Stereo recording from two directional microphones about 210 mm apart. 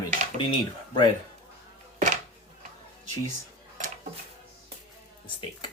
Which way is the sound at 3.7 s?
35° right (ahead or behind).